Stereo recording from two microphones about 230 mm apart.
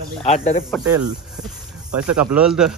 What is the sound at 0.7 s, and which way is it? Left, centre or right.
Speech, centre.